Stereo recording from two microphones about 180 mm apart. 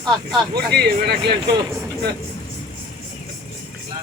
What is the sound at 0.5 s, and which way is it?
Speech, 60° right (ahead or behind).